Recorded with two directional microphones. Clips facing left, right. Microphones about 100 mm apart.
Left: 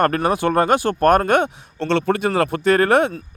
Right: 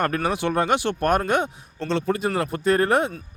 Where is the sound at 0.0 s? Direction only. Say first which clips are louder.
Left 5 dB; 50° left (ahead or behind).